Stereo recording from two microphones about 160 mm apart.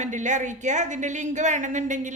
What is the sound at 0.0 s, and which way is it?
Speech, 50° right (ahead or behind).